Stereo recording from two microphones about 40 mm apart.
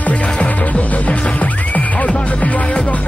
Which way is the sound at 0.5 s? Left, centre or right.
Left.